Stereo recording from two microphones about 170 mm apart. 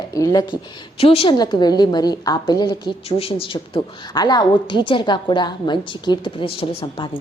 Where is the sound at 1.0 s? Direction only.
35° left (ahead or behind).